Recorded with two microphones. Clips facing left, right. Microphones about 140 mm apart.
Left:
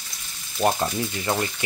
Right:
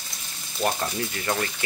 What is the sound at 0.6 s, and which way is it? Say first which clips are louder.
Speech: left 4 dB; 25° left (ahead or behind).